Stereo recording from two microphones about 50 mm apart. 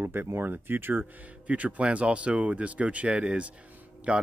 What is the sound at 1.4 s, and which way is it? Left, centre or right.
Speech, right.